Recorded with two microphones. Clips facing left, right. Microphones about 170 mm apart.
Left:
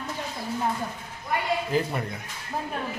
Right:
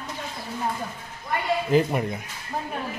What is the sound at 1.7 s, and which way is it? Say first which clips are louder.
Speech: right 9 dB; 15° right (ahead or behind).